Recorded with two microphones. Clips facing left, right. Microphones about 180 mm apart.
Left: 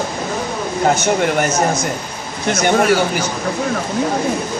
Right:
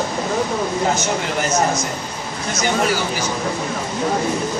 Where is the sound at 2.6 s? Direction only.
55° left (ahead or behind).